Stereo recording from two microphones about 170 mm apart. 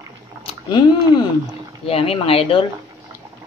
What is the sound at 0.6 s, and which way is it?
Speech, 25° left (ahead or behind).